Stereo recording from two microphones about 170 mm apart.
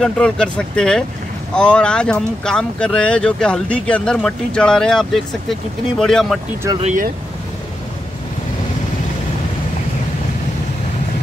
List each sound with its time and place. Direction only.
0.0 s speech: 5° left (ahead or behind)
6.8 s speech: 45° right (ahead or behind)